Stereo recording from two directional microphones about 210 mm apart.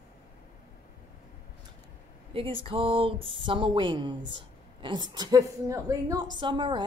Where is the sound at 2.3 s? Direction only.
25° right (ahead or behind).